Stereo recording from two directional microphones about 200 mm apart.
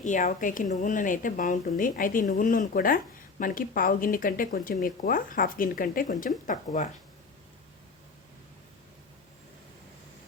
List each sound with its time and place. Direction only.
0.0 s a woman's voice: 40° left (ahead or behind)